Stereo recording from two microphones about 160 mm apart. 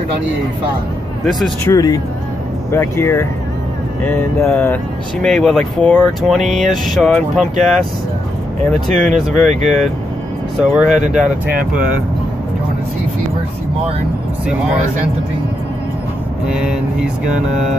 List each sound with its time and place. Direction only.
1.7 s speech: 25° left (ahead or behind)
5.2 s speech: centre (ahead or behind)
8.8 s speech: 5° left (ahead or behind)
10.6 s speech: 5° right (ahead or behind)
16.4 s speech: 5° right (ahead or behind)